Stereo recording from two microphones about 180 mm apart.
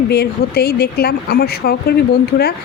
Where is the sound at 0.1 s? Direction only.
60° left (ahead or behind).